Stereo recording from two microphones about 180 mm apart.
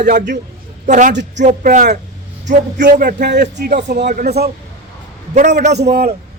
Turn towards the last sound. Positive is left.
turn(degrees=-60)  # may be behind; listen again after turning